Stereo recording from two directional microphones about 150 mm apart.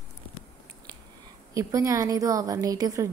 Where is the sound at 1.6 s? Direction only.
20° right (ahead or behind).